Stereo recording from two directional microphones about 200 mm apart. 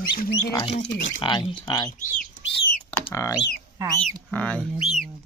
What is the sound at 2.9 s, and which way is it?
Speech, 15° left (ahead or behind).